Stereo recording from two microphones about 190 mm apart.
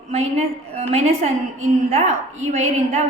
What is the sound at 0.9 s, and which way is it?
A woman's voice, 35° right (ahead or behind).